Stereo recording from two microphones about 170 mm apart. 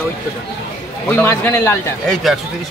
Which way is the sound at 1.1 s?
10° left (ahead or behind).